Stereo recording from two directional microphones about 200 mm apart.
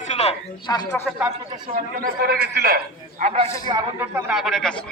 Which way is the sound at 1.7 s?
50° right (ahead or behind).